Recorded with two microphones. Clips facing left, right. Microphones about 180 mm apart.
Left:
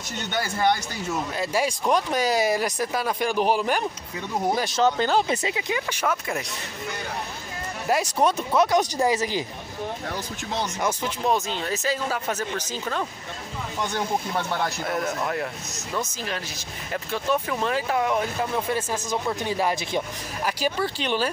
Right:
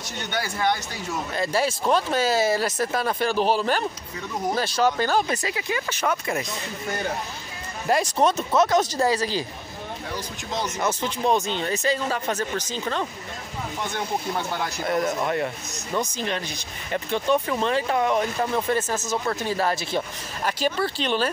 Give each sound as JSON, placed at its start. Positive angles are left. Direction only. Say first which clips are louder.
{"t": 1.3, "sound": "speech", "louder": "right 3 dB", "side_deg": 10}
{"t": 6.0, "sound": "speech", "louder": "right 2 dB", "side_deg": 0}
{"t": 7.9, "sound": "speech", "louder": "right 1 dB", "side_deg": 10}
{"t": 11.0, "sound": "speech", "louder": "right 3 dB", "side_deg": 0}
{"t": 14.8, "sound": "speech", "louder": "right 3 dB", "side_deg": 0}